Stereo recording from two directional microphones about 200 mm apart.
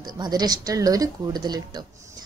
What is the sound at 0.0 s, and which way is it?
A woman's voice, 20° right (ahead or behind).